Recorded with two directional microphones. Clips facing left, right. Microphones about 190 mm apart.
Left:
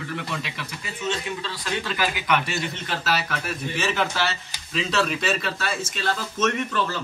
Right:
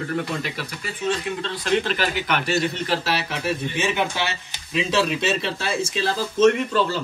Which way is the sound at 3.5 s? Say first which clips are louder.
Right 5 dB; 15° right (ahead or behind).